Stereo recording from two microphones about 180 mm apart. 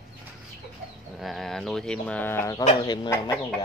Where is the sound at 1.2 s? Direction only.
Centre (ahead or behind).